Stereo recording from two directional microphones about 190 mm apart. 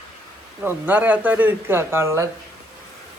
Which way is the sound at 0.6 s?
10° right (ahead or behind).